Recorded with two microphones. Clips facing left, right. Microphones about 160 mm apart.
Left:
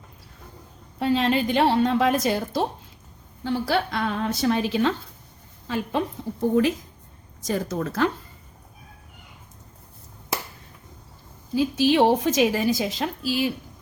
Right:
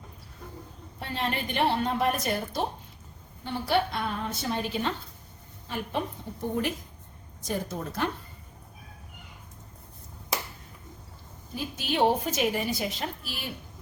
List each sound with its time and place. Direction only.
0.9 s a woman's voice: 90° left
7.4 s a woman's voice: 90° left
11.5 s a woman's voice: 90° left